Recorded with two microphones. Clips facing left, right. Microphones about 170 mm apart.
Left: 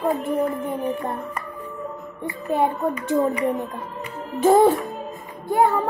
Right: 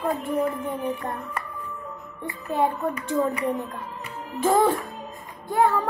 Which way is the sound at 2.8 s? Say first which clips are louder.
Left 3 dB; 40° left (ahead or behind).